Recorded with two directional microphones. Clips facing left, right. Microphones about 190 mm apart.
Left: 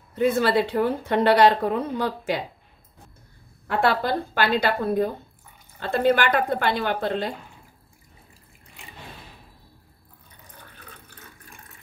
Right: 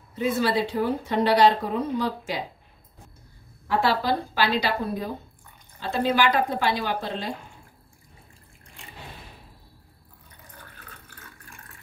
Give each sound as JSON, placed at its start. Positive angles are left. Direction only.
{"t": 0.1, "sound": "a woman's voice", "side_deg": 55}
{"t": 3.6, "sound": "a woman's voice", "side_deg": 55}